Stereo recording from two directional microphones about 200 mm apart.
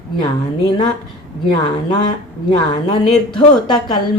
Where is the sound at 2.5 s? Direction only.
20° left (ahead or behind).